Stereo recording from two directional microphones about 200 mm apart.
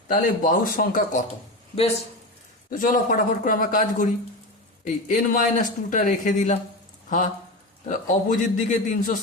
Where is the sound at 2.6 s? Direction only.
40° left (ahead or behind).